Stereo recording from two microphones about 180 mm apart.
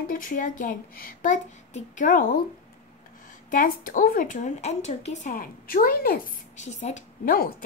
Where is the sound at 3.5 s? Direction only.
50° left (ahead or behind).